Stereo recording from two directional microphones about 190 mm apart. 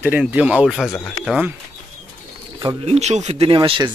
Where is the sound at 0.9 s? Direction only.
10° left (ahead or behind).